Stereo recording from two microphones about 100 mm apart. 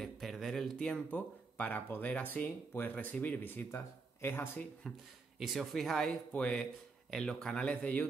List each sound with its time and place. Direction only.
0.0 s speech: centre (ahead or behind); by 4.6 s 25° left (ahead or behind)
5.4 s speech: centre (ahead or behind); by 8.1 s 15° left (ahead or behind)